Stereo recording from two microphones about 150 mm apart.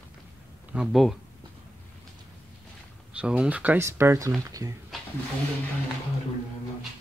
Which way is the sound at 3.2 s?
10° right (ahead or behind).